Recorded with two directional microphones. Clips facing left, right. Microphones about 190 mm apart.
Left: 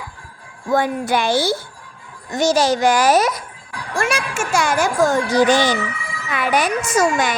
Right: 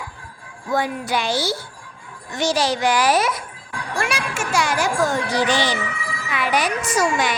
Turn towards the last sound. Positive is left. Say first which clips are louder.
# left 3 dB
turn(degrees=45)  # may be behind; listen again after turning